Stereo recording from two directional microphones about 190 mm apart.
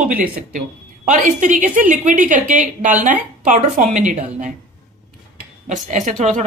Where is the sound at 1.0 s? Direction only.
40° right (ahead or behind).